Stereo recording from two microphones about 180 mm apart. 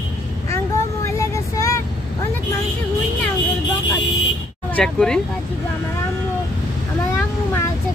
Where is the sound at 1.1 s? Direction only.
15° left (ahead or behind).